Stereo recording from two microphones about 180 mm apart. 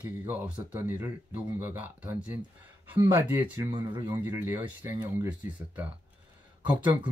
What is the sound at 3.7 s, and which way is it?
Speech, 25° right (ahead or behind).